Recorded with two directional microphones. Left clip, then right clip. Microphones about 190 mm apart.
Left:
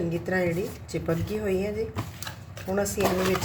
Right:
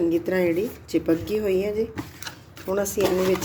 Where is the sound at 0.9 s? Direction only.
45° right (ahead or behind).